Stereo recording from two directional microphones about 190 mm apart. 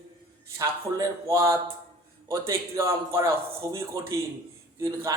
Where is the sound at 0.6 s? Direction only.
15° right (ahead or behind).